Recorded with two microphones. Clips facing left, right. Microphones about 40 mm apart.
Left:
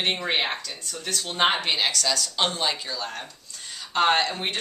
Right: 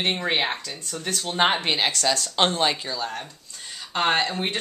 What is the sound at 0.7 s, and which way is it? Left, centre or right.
Speech, right.